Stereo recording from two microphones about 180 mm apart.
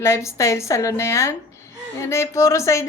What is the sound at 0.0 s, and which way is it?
Speech, 15° left (ahead or behind).